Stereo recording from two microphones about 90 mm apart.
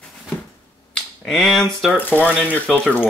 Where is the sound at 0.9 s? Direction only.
5° left (ahead or behind).